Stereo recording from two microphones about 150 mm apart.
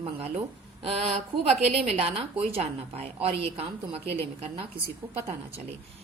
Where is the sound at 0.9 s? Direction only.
40° right (ahead or behind).